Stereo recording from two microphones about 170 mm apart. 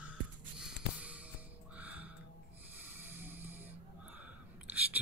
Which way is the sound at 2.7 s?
10° right (ahead or behind).